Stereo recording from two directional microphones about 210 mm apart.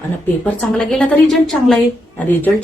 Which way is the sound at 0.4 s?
5° left (ahead or behind).